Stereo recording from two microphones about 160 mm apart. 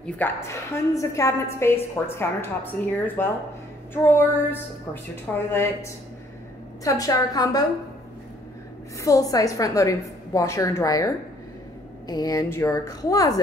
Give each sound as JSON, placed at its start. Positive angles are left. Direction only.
{"t": 0.0, "sound": "a woman's voice", "side_deg": 15}
{"t": 9.0, "sound": "a woman's voice", "side_deg": 20}